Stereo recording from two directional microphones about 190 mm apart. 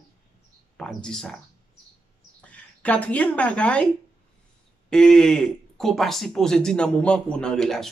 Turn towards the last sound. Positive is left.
turn(degrees=5)  # may be behind; listen again after turning